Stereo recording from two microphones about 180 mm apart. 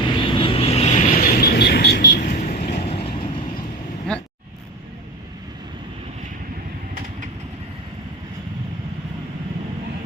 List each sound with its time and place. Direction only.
0.1 s vehicle: 30° left (ahead or behind); by 2.0 s 65° left (ahead or behind)
2.2 s vehicle: 45° left (ahead or behind)
2.9 s vehicle: 30° left (ahead or behind)
4.1 s vehicle: 5° left (ahead or behind)